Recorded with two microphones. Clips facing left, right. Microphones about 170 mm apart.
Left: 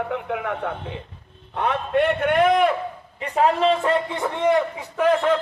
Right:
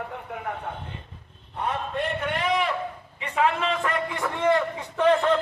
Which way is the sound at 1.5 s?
75° left (ahead or behind).